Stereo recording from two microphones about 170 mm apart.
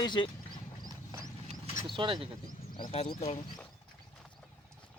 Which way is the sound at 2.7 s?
35° left (ahead or behind).